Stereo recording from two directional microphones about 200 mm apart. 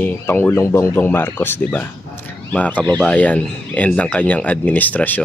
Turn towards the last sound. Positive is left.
turn(degrees=10)  # may be behind; listen again after turning